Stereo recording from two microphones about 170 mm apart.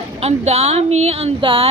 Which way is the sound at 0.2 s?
40° right (ahead or behind).